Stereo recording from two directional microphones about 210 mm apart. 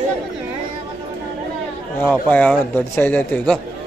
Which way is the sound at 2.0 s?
5° left (ahead or behind).